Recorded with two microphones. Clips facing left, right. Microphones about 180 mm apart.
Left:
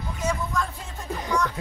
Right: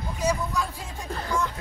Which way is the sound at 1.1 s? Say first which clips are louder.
Left 2 dB; 15° left (ahead or behind).